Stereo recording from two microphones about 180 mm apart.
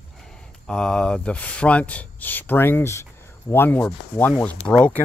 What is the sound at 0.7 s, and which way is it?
Speech, 5° left (ahead or behind).